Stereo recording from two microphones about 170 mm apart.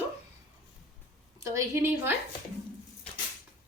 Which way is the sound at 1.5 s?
15° right (ahead or behind).